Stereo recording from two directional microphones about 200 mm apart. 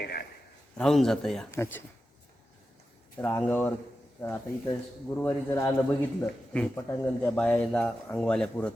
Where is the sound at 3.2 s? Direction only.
10° left (ahead or behind).